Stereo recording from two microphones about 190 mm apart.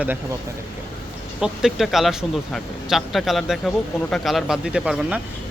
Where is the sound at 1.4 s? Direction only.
Centre (ahead or behind).